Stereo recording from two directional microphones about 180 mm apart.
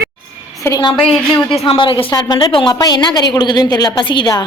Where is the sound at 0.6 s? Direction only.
20° left (ahead or behind).